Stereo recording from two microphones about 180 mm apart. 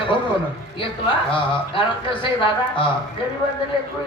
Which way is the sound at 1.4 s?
25° left (ahead or behind).